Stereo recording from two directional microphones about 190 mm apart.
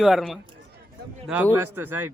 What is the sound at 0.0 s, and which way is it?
Speech, centre (ahead or behind).